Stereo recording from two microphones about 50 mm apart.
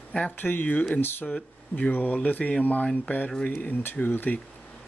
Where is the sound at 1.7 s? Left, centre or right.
Left.